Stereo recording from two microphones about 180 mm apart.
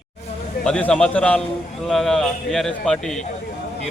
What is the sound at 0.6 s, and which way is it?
A man's voice, 5° left (ahead or behind).